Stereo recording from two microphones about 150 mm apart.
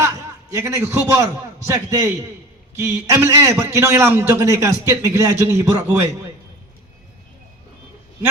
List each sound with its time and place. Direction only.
0.0 s a man's voice: 20° right (ahead or behind)